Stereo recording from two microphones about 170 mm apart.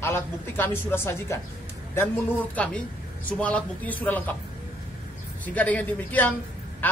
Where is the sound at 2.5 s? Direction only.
10° left (ahead or behind).